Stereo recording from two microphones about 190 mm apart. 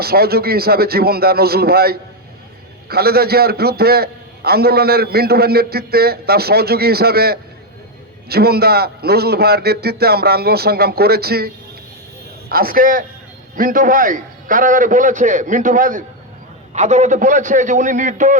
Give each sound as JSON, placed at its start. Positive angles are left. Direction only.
{"t": 0.0, "sound": "a man's voice", "side_deg": -55}